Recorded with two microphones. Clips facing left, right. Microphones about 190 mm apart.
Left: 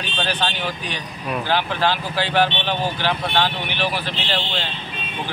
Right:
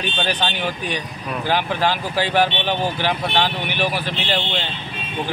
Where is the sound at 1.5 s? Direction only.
10° right (ahead or behind).